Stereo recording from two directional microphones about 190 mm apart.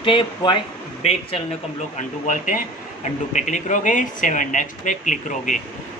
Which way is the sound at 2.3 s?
45° left (ahead or behind).